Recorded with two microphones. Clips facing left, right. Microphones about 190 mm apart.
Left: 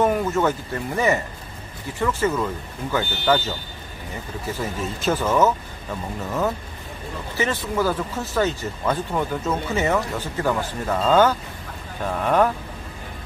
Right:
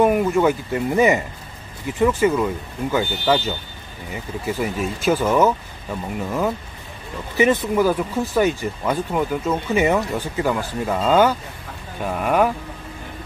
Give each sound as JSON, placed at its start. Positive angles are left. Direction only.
{"t": 0.0, "sound": "speech", "side_deg": -15}
{"t": 7.3, "sound": "speech", "side_deg": -15}